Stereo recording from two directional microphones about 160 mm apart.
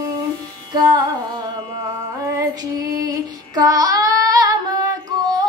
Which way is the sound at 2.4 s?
20° right (ahead or behind).